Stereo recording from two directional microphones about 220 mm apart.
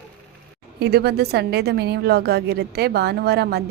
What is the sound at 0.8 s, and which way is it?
A woman's voice, 45° right (ahead or behind).